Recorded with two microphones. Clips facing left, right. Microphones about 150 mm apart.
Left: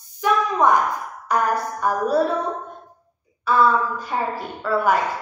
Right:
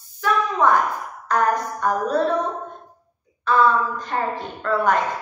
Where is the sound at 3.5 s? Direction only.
10° left (ahead or behind).